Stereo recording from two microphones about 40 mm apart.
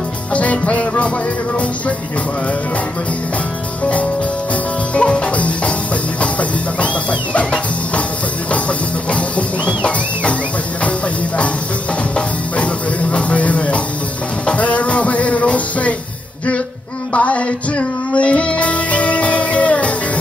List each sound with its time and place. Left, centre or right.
0.3 s music: left
4.9 s music: left
6.8 s music: left
9.7 s music: left
13.1 s music: left
17.1 s music: left